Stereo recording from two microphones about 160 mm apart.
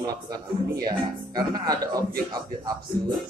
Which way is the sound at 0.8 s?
25° right (ahead or behind).